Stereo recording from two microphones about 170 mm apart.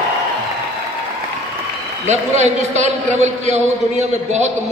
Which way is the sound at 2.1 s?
40° right (ahead or behind).